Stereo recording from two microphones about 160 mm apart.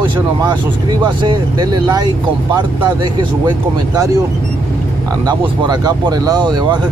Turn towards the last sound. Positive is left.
turn(degrees=-25)  # may be behind; listen again after turning